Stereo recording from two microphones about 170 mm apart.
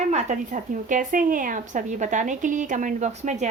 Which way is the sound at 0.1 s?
45° right (ahead or behind).